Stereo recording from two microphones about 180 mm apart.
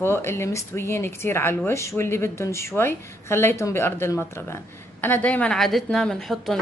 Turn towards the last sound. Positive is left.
turn(degrees=0)  # may be behind; listen again after turning